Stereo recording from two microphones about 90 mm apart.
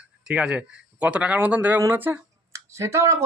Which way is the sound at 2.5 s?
35° right (ahead or behind).